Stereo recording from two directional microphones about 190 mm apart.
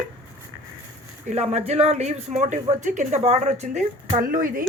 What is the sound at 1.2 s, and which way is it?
A woman's voice, 35° right (ahead or behind).